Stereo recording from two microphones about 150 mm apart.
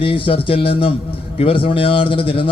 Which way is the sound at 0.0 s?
40° left (ahead or behind).